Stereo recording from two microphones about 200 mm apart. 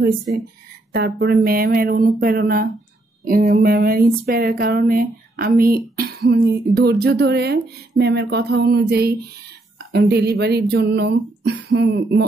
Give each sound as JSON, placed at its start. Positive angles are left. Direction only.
{"t": 0.9, "sound": "speech", "side_deg": -50}